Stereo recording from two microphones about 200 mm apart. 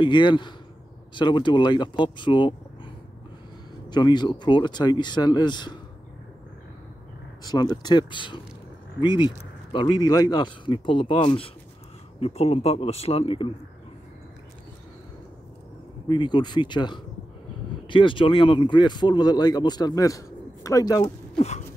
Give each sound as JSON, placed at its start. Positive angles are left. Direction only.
{"t": 0.0, "sound": "speech", "side_deg": 25}
{"t": 3.9, "sound": "speech", "side_deg": 20}
{"t": 7.4, "sound": "speech", "side_deg": 20}
{"t": 16.1, "sound": "speech", "side_deg": 20}